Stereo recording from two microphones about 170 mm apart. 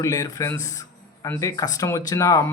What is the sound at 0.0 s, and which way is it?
Speech, 20° left (ahead or behind).